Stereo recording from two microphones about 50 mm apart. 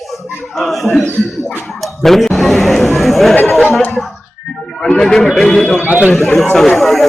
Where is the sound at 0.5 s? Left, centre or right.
Centre.